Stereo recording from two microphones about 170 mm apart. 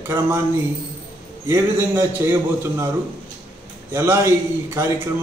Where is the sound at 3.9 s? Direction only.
15° right (ahead or behind).